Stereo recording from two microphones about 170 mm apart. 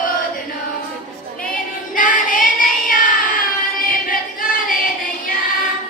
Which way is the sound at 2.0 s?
50° left (ahead or behind).